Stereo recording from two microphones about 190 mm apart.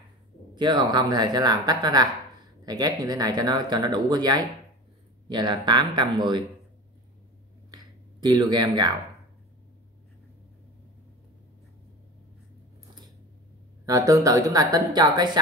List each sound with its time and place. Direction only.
0.6 s speech: 25° right (ahead or behind)
7.7 s a sound: 20° right (ahead or behind)
13.8 s speech: 15° right (ahead or behind)